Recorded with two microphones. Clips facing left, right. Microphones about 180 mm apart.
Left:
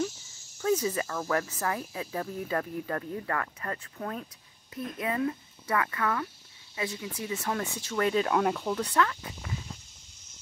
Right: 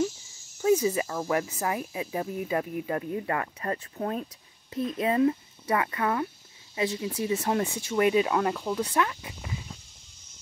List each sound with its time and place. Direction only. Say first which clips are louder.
0.6 s speech: right 4 dB; 15° right (ahead or behind)
7.7 s speech: right 3 dB; 15° right (ahead or behind)